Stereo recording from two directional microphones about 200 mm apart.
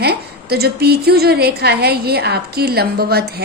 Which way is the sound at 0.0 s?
50° right (ahead or behind).